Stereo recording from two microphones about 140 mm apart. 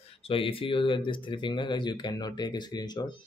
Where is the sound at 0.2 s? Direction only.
40° left (ahead or behind).